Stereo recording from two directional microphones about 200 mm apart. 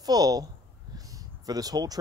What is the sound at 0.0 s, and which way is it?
Speech, 20° right (ahead or behind).